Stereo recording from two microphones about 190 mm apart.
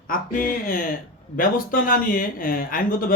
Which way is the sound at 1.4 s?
50° left (ahead or behind).